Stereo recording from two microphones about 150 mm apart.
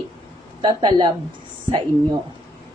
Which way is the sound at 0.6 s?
30° right (ahead or behind).